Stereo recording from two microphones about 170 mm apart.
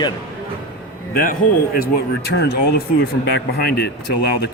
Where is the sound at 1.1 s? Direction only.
55° left (ahead or behind).